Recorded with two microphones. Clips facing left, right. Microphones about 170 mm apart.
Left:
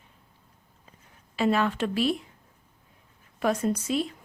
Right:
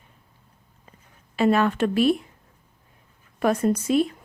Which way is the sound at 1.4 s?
50° right (ahead or behind).